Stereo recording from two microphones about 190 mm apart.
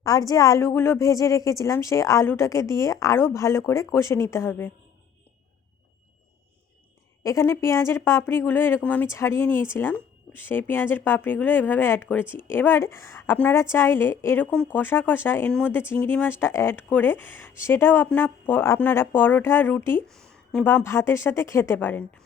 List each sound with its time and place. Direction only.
0.0 s speech: 20° left (ahead or behind)
7.2 s speech: 15° left (ahead or behind)